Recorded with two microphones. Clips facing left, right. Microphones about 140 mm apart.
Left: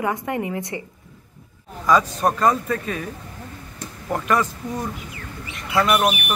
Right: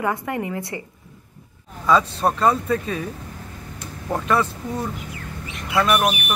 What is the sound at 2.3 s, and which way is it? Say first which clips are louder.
Speech: right 1 dB; 5° right (ahead or behind).